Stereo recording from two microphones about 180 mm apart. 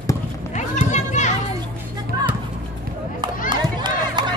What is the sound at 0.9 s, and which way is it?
Children playing, 40° left (ahead or behind).